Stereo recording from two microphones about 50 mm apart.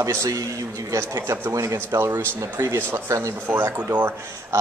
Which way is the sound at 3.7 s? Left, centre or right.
Right.